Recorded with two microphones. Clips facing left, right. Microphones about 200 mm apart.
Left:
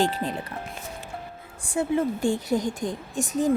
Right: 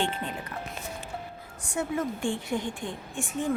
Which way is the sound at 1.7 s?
30° left (ahead or behind).